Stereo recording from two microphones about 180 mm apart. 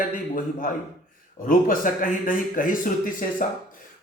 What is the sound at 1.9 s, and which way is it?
Speech, 50° left (ahead or behind).